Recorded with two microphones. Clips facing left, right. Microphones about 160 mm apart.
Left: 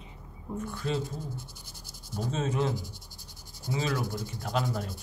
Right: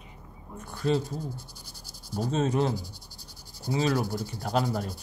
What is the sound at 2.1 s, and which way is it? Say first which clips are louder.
Rub: right 4 dB; 40° right (ahead or behind).